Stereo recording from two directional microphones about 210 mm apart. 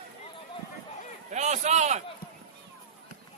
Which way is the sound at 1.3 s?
35° right (ahead or behind).